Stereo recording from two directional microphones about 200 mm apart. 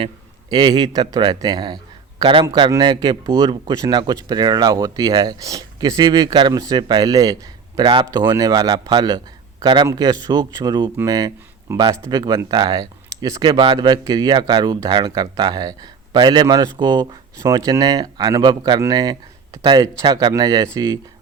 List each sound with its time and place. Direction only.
0.5 s a man's voice: 20° right (ahead or behind)